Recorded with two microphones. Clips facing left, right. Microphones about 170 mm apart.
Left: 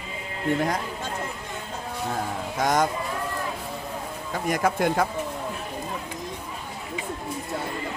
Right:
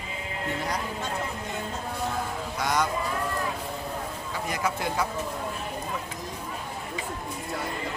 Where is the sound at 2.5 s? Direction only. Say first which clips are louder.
Left 4 dB; 45° left (ahead or behind).